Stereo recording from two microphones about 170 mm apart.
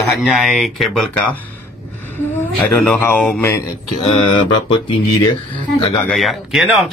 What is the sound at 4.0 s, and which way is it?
Mantra, 30° left (ahead or behind).